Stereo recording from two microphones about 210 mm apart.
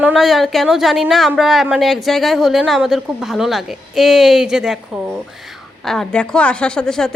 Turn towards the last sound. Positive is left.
turn(degrees=5)  # may be behind; listen again after turning